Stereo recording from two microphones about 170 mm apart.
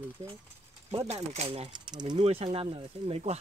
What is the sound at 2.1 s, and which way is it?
Speech, 35° right (ahead or behind).